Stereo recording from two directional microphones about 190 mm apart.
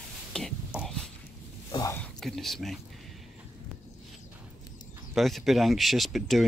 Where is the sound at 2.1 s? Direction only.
Centre (ahead or behind).